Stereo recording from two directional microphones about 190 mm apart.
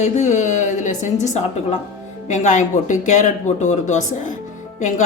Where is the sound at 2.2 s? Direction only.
40° left (ahead or behind).